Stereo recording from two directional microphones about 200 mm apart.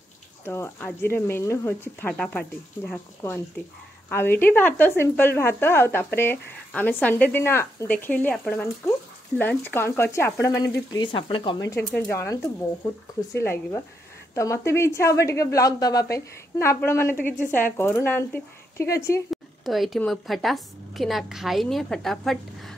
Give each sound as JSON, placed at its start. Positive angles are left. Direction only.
{"t": 0.5, "sound": "a woman's voice", "side_deg": 10}
{"t": 4.1, "sound": "a woman's voice", "side_deg": 10}
{"t": 10.9, "sound": "frying", "side_deg": 25}
{"t": 11.7, "sound": "a woman's voice", "side_deg": 15}
{"t": 13.4, "sound": "a woman's voice", "side_deg": 10}
{"t": 19.3, "sound": "a woman's voice", "side_deg": 0}